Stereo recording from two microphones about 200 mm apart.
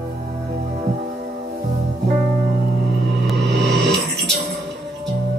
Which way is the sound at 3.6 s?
60° right (ahead or behind).